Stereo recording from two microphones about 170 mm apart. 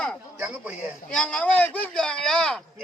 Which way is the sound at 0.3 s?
10° right (ahead or behind).